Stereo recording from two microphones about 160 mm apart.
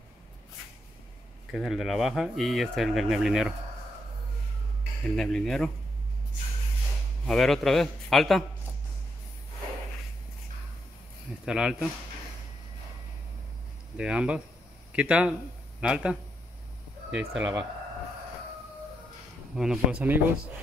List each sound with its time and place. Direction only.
1.5 s speech: centre (ahead or behind)
5.1 s speech: 5° left (ahead or behind)
7.2 s speech: centre (ahead or behind)
11.4 s speech: 5° right (ahead or behind)
13.9 s speech: 5° right (ahead or behind)
19.5 s speech: 5° right (ahead or behind)